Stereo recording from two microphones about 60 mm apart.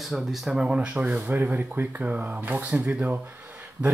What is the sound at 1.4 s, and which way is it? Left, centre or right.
Speech, right.